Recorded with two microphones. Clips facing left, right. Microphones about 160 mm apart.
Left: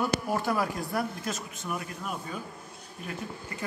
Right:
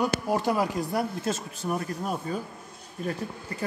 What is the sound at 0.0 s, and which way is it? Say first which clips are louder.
Speech: right 3 dB; 15° right (ahead or behind).